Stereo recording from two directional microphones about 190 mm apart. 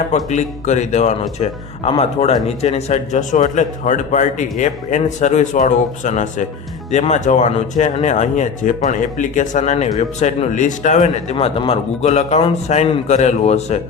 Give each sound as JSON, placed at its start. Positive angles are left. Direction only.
{"t": 0.3, "sound": "speech", "side_deg": 40}